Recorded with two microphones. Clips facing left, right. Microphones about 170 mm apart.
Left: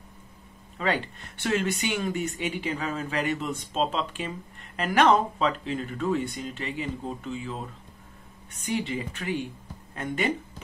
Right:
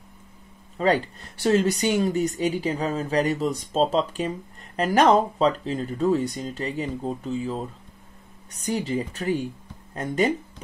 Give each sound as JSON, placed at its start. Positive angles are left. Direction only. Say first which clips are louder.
{"t": 0.7, "sound": "speech", "louder": "right 6 dB", "side_deg": -40}